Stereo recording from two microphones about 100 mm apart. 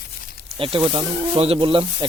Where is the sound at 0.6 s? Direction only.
60° right (ahead or behind).